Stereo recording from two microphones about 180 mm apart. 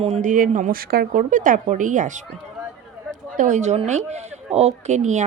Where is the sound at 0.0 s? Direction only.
40° right (ahead or behind).